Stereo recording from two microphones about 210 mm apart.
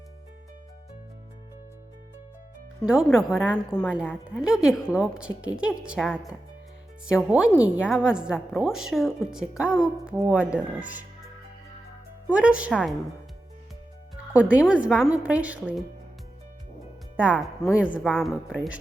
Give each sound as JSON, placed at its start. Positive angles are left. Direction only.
{"t": 2.8, "sound": "a woman's voice", "side_deg": -5}
{"t": 7.1, "sound": "a woman's voice", "side_deg": -5}
{"t": 12.3, "sound": "a woman's voice", "side_deg": -5}
{"t": 14.3, "sound": "a woman's voice", "side_deg": -5}
{"t": 17.2, "sound": "a woman's voice", "side_deg": -5}